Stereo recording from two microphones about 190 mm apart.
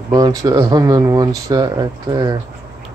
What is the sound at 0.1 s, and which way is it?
Speech, 20° right (ahead or behind).